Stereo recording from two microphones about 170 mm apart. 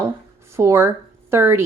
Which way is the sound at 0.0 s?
15° right (ahead or behind).